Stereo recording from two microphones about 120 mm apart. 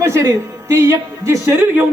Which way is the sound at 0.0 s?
25° right (ahead or behind).